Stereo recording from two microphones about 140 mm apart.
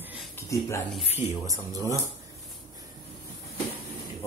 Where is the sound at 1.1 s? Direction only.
25° right (ahead or behind).